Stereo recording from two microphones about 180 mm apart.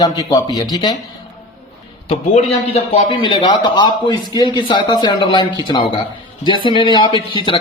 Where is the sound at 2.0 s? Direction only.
35° left (ahead or behind).